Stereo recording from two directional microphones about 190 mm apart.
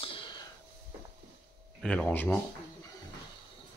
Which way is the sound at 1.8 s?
5° left (ahead or behind).